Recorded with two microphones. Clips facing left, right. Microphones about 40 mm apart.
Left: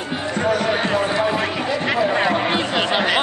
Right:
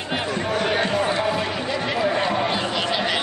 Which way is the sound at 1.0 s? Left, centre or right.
Centre.